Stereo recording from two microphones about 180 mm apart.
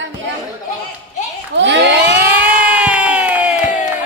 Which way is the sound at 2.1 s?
10° right (ahead or behind).